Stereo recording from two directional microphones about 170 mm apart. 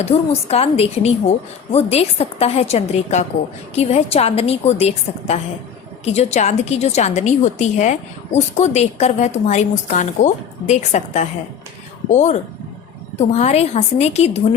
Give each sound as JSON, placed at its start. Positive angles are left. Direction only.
{"t": 0.0, "sound": "a woman's voice", "side_deg": 40}